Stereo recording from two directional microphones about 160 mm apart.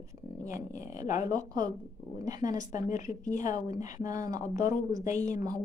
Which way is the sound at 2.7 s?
50° left (ahead or behind).